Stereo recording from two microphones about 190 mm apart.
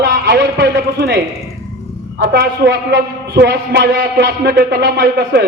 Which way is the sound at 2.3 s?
60° right (ahead or behind).